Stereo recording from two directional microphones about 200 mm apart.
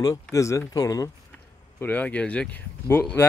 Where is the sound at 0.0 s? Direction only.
15° left (ahead or behind).